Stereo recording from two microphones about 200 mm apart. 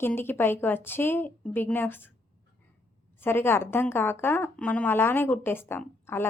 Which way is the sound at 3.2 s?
10° left (ahead or behind).